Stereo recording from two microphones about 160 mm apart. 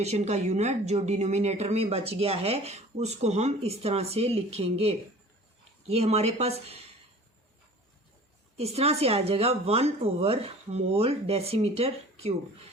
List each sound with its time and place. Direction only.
0.0 s speech: 45° right (ahead or behind)
8.5 s speech: 40° right (ahead or behind)